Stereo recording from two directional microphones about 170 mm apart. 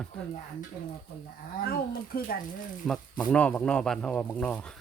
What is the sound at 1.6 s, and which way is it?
Speech, 60° left (ahead or behind).